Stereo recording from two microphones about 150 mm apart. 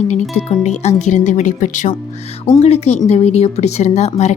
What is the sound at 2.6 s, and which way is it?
Speech, 45° left (ahead or behind).